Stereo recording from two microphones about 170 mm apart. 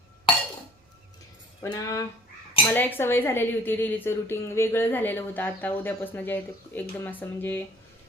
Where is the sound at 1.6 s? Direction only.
20° left (ahead or behind).